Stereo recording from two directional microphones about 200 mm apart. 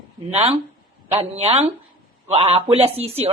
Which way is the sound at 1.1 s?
30° right (ahead or behind).